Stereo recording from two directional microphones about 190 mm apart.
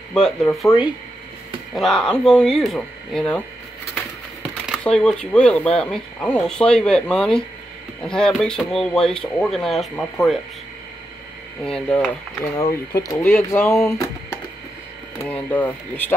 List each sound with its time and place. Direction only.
0.1 s speech: 5° left (ahead or behind)
1.8 s speech: centre (ahead or behind)
11.6 s speech: 5° left (ahead or behind)
12.4 s speech: 20° left (ahead or behind)